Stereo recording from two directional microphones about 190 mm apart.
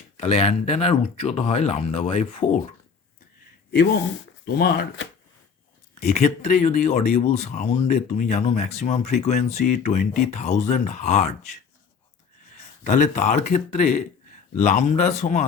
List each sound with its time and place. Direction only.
0.2 s speech: 35° left (ahead or behind)
4.4 s speech: 55° left (ahead or behind)
6.0 s speech: 35° left (ahead or behind)
12.8 s speech: 40° left (ahead or behind)